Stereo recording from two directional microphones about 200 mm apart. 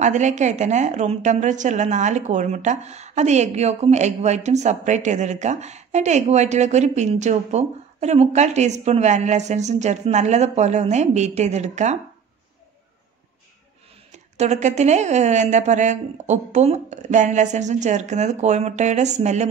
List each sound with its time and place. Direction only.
0.0 s a woman's voice: 35° right (ahead or behind)
14.1 s a woman's voice: 35° right (ahead or behind)